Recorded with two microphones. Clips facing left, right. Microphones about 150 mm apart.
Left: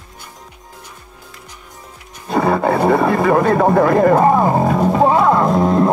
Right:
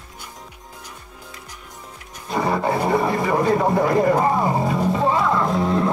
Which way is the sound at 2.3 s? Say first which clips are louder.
Left 6 dB; 60° left (ahead or behind).